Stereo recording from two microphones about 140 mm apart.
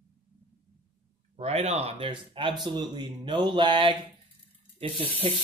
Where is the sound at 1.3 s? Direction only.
50° right (ahead or behind).